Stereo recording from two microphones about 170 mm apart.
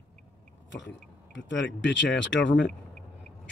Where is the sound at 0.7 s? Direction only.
90° left.